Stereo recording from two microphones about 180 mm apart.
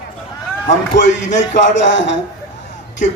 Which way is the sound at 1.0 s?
90° left.